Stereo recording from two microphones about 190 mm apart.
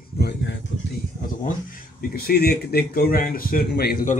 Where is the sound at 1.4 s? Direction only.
45° left (ahead or behind).